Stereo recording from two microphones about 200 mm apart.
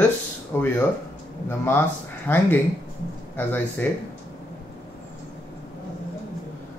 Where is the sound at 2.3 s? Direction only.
10° left (ahead or behind).